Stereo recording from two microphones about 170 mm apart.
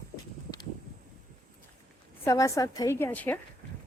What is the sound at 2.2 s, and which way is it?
A woman's voice, 20° left (ahead or behind).